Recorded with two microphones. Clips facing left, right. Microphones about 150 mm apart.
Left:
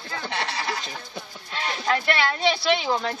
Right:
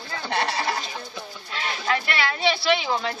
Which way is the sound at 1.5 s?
40° left (ahead or behind).